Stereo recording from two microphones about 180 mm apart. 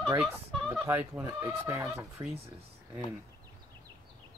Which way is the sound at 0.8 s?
15° right (ahead or behind).